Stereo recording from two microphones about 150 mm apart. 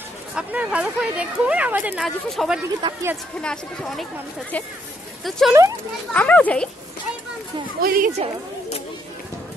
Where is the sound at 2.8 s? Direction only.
25° right (ahead or behind).